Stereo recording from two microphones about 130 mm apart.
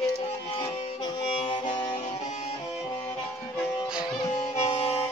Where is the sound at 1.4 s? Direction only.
40° left (ahead or behind).